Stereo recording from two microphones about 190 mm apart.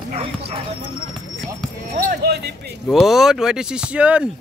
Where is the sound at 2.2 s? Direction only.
60° right (ahead or behind).